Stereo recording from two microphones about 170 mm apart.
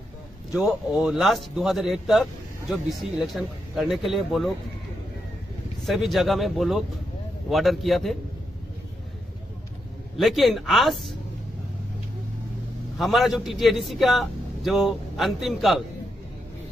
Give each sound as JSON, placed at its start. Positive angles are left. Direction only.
{"t": 0.5, "sound": "a man's voice", "side_deg": 0}
{"t": 5.9, "sound": "a man's voice", "side_deg": 0}
{"t": 10.1, "sound": "a man's voice", "side_deg": 0}
{"t": 12.9, "sound": "a man's voice", "side_deg": 0}